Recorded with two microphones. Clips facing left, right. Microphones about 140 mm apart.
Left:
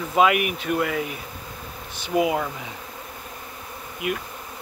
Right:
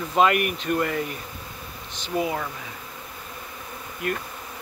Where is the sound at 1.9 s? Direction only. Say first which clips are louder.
Left 4 dB; 15° left (ahead or behind).